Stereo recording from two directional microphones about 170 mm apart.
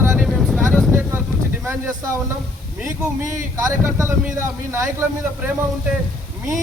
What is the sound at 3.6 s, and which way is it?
Speech, 15° right (ahead or behind).